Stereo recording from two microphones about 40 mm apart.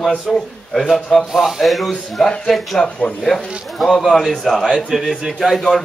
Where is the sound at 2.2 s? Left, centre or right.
Left.